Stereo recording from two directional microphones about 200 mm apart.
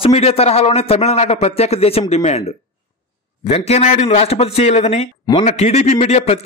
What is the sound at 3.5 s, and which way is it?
A man's voice, 30° left (ahead or behind).